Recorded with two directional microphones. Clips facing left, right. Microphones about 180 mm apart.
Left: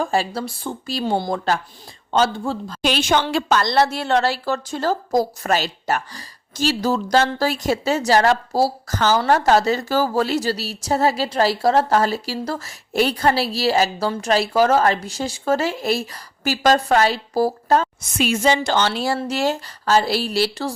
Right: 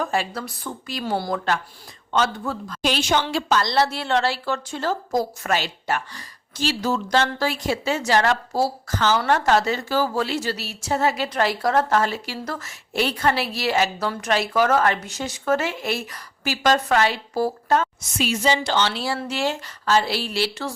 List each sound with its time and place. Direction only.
0.0 s a woman's voice: 30° left (ahead or behind)
2.8 s a woman's voice: 60° left (ahead or behind); by 17.8 s 35° left (ahead or behind)
18.2 s a woman's voice: 55° left (ahead or behind); by 20.7 s 35° left (ahead or behind)